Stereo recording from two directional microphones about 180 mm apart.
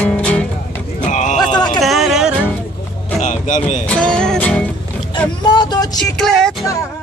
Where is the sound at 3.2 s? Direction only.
45° left (ahead or behind).